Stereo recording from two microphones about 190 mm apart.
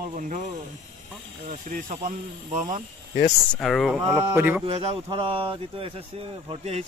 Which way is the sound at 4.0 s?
15° right (ahead or behind).